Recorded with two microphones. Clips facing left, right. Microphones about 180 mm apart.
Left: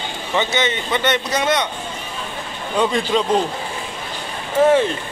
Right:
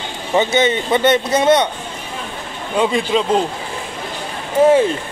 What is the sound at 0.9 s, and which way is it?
Speech, 25° right (ahead or behind).